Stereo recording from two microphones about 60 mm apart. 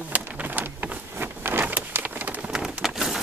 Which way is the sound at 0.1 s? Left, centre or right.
Right.